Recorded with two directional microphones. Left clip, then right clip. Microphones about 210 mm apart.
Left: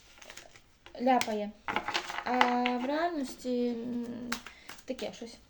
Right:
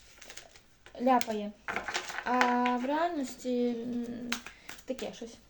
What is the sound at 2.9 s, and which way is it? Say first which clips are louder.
Speech: right 1 dB; 5° left (ahead or behind).